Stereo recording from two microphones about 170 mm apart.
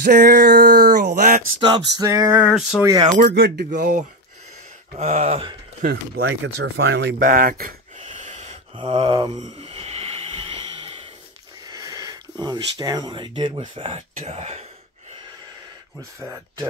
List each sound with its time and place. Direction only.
0.0 s a sound: 65° right (ahead or behind); by 1.4 s 50° right (ahead or behind)
1.6 s a sound: 25° right (ahead or behind); by 2.8 s 5° right (ahead or behind)
2.8 s a sound: 20° right (ahead or behind)
3.2 s speech: 65° right (ahead or behind)
4.9 s speech: 40° right (ahead or behind)
5.9 s speech: 80° right
7.2 s speech: 55° right (ahead or behind)
8.0 s wheeze: 45° right (ahead or behind)
8.7 s a sound: 30° right (ahead or behind)
9.4 s snort: 35° right (ahead or behind)
11.6 s speech: 20° right (ahead or behind); by 14.7 s 40° right (ahead or behind)
16.0 s speech: 20° right (ahead or behind)